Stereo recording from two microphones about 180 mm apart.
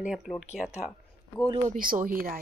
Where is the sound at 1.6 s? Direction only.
50° right (ahead or behind).